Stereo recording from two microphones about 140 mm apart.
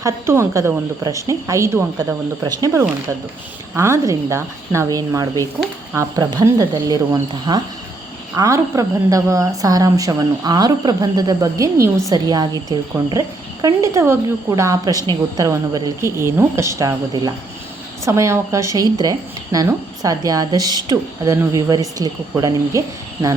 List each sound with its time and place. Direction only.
0.0 s speech: 20° right (ahead or behind)